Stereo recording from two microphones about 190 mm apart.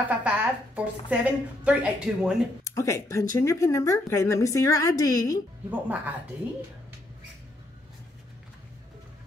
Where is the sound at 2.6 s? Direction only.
15° left (ahead or behind).